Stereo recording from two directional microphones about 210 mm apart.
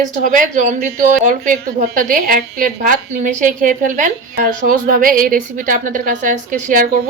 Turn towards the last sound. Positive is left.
turn(degrees=-35)  # may be behind; listen again after turning